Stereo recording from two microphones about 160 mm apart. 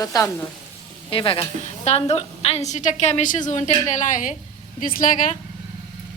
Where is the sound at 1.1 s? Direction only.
35° left (ahead or behind).